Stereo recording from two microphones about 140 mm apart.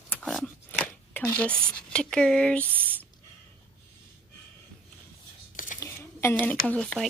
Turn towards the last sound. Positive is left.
turn(degrees=5)  # may be behind; listen again after turning